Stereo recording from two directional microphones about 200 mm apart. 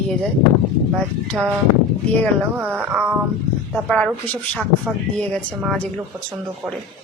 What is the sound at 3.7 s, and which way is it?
Speech, 5° left (ahead or behind).